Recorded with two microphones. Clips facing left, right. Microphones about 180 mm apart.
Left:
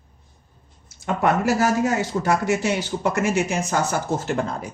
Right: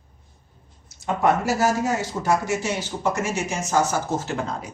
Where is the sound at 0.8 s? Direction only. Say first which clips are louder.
Even; 60° left (ahead or behind).